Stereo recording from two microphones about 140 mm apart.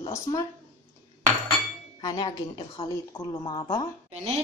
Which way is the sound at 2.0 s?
30° left (ahead or behind).